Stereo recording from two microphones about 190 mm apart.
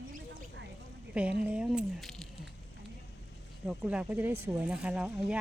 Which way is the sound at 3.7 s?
5° right (ahead or behind).